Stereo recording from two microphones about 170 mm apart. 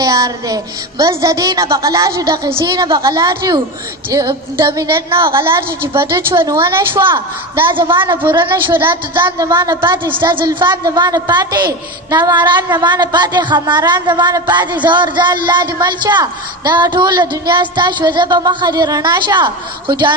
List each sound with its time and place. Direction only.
0.0 s a woman's voice: 20° right (ahead or behind)
5.2 s a woman's voice: 15° right (ahead or behind)
7.7 s a woman's voice: 30° right (ahead or behind)